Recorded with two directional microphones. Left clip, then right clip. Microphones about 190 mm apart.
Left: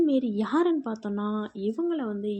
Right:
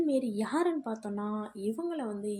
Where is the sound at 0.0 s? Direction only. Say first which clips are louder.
Left 5 dB; 25° left (ahead or behind).